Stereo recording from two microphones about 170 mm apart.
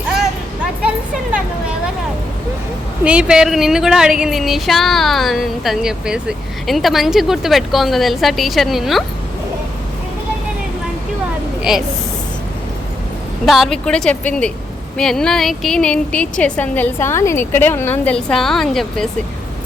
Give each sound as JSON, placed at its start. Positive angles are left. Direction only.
{"t": 3.0, "sound": "speech", "side_deg": -5}
{"t": 13.4, "sound": "speech", "side_deg": 0}